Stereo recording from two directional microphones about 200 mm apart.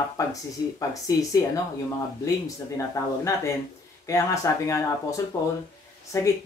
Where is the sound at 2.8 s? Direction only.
15° left (ahead or behind).